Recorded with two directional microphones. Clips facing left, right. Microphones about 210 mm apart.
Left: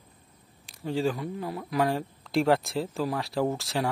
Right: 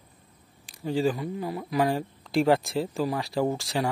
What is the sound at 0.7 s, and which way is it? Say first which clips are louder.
Speech: right 2 dB; centre (ahead or behind).